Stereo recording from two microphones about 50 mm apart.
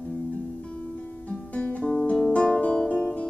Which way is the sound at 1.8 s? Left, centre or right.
Centre.